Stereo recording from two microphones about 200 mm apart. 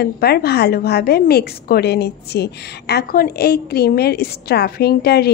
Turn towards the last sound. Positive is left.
turn(degrees=50)  # may be behind; listen again after turning